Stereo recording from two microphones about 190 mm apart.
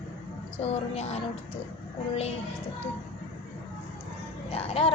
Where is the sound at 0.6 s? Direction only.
35° left (ahead or behind).